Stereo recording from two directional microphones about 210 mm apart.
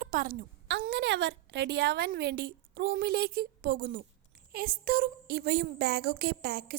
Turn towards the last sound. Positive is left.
turn(degrees=-50)  # may be behind; listen again after turning